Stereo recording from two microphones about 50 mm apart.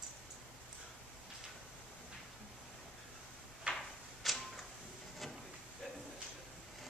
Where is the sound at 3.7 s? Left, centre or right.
Right.